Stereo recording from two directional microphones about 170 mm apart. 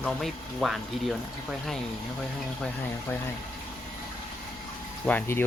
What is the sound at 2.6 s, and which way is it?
Speech, 15° left (ahead or behind).